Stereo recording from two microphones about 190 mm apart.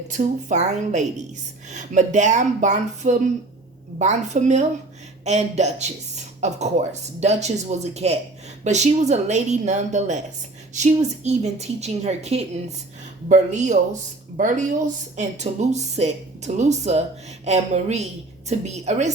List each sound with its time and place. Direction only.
0.2 s a woman's voice: 40° right (ahead or behind)